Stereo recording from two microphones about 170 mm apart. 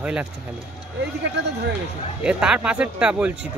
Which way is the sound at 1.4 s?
80° right.